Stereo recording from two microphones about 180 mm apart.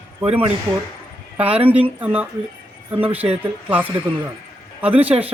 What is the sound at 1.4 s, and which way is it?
Speech, 10° right (ahead or behind).